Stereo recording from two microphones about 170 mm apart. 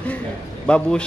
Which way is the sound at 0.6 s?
5° left (ahead or behind).